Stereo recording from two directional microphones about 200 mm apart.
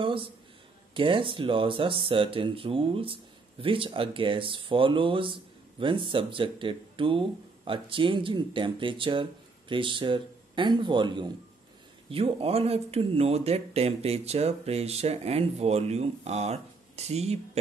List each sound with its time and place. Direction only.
0.9 s speech: 25° right (ahead or behind)